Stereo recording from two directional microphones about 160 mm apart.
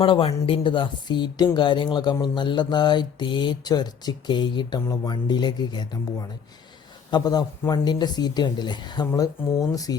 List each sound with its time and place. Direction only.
0.0 s speech: 35° left (ahead or behind)